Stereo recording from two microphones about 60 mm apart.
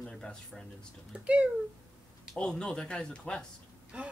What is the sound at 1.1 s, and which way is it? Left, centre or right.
Speech, centre.